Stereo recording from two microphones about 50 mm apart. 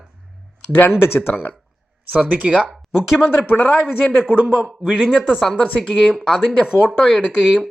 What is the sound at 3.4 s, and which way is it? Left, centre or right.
Speech, left.